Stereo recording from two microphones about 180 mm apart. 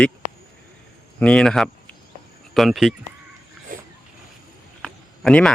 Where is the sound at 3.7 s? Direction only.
50° right (ahead or behind).